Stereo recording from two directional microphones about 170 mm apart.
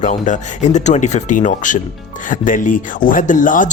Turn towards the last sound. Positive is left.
turn(degrees=50)  # may be behind; listen again after turning